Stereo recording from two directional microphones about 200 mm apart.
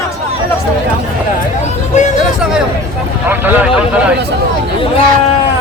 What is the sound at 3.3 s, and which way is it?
Speech, 10° right (ahead or behind).